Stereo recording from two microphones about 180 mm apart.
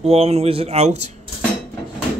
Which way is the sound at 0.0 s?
35° right (ahead or behind).